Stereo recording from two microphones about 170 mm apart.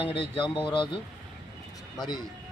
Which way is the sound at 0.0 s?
30° left (ahead or behind).